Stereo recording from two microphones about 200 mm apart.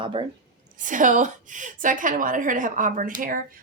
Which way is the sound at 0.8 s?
40° right (ahead or behind).